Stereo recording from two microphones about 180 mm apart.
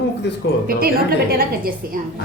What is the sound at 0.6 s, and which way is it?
A woman's voice, 55° right (ahead or behind).